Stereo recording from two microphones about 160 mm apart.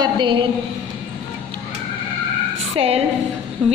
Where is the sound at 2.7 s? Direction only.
40° right (ahead or behind).